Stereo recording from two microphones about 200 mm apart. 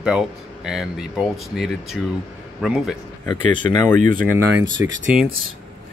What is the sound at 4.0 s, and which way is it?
Speech, 40° right (ahead or behind).